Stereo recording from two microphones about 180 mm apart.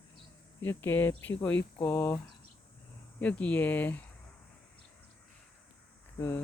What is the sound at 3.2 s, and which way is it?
Speech, 10° left (ahead or behind).